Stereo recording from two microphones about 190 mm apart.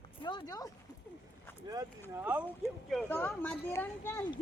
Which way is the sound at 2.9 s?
5° left (ahead or behind).